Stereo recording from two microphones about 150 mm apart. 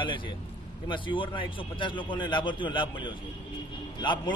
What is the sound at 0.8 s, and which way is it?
A man's voice, 35° left (ahead or behind).